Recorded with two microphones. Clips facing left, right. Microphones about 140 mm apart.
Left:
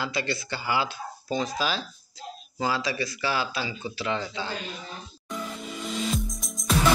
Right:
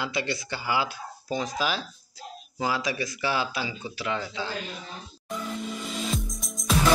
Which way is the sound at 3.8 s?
5° right (ahead or behind).